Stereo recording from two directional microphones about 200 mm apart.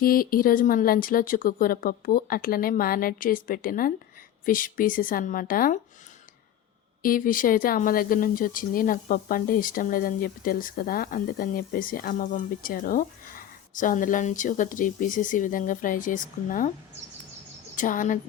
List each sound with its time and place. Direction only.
0.0 s a woman's voice: 45° left (ahead or behind)
7.0 s a woman's voice: 45° left (ahead or behind)
17.7 s a woman's voice: 40° left (ahead or behind)